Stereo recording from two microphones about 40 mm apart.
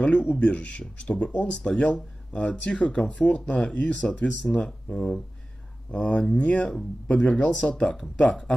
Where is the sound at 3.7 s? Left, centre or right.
Left.